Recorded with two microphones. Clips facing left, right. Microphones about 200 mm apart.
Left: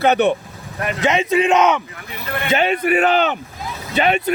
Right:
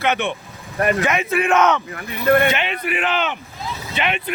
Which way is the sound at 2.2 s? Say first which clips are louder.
Right 11 dB; 55° right (ahead or behind).